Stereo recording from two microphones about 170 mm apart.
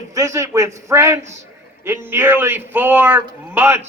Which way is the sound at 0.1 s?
20° right (ahead or behind).